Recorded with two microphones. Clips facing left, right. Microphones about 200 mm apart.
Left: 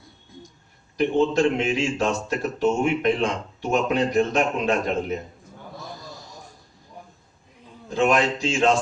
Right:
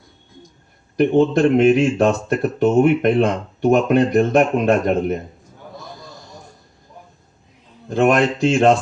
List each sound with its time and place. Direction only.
0.9 s speech: 55° right (ahead or behind)
7.9 s speech: 60° right (ahead or behind)